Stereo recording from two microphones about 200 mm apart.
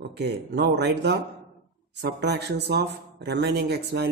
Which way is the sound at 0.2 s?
55° right (ahead or behind).